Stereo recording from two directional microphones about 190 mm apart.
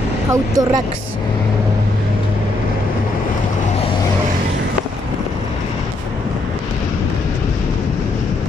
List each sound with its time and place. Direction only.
0.3 s speech: 20° right (ahead or behind)